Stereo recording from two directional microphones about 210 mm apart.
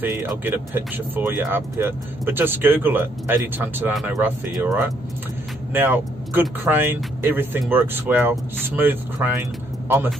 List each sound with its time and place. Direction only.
0.0 s speech: 10° right (ahead or behind)